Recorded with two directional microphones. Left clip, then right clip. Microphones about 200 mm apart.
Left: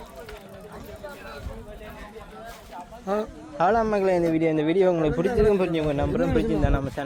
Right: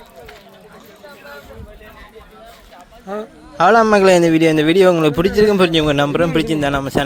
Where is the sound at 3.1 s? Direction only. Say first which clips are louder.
Even; 30° left (ahead or behind).